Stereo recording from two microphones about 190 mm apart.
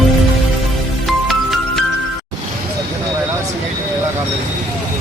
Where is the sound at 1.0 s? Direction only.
Centre (ahead or behind).